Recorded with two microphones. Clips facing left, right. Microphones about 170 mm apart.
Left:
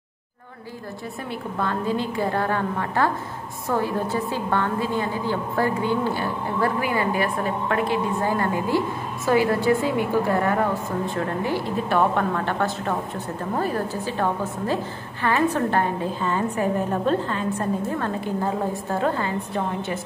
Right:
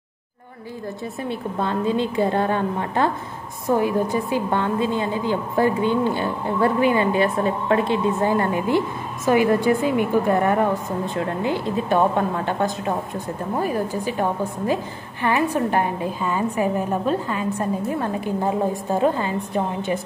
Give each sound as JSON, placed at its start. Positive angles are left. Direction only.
{"t": 1.6, "sound": "a woman's voice", "side_deg": -20}